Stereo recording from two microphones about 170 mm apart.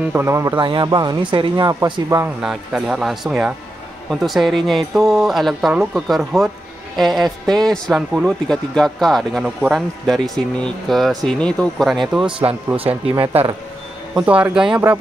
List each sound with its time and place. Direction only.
0.0 s speech: 15° right (ahead or behind)
2.4 s speech: 5° right (ahead or behind)
12.3 s speech: 30° right (ahead or behind)
14.1 s speech: 5° right (ahead or behind)